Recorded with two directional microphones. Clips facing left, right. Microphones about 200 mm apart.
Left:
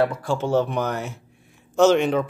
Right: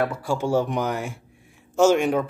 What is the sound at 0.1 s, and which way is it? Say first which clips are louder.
Speech: left 1 dB; 10° right (ahead or behind).